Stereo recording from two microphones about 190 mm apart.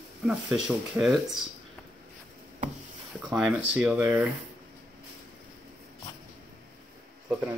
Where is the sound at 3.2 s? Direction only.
Centre (ahead or behind).